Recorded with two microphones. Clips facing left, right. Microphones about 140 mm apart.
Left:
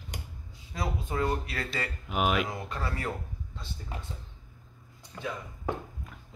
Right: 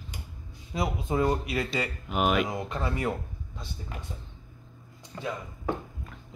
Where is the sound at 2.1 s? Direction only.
Centre (ahead or behind).